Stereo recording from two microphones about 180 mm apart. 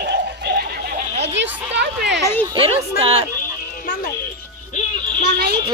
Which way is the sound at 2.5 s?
30° right (ahead or behind).